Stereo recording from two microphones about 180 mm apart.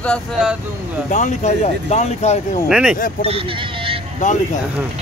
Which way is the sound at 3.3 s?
30° right (ahead or behind).